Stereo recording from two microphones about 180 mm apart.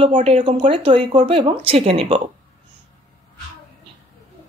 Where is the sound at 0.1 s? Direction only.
35° right (ahead or behind).